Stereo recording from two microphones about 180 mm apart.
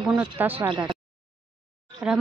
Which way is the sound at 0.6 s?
25° right (ahead or behind).